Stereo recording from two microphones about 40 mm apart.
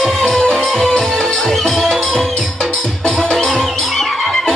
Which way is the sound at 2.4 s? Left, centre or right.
Centre.